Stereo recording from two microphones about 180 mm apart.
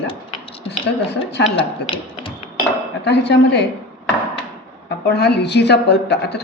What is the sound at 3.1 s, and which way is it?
Speech, 70° left (ahead or behind).